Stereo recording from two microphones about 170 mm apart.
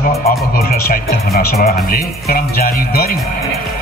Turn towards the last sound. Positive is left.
turn(degrees=60)  # may be behind; listen again after turning